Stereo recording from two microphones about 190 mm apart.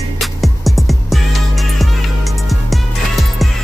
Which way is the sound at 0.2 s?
Centre (ahead or behind).